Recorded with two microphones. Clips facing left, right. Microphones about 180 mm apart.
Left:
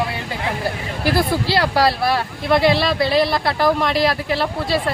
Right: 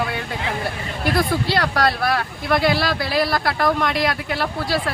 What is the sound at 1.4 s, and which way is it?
Speech, centre (ahead or behind).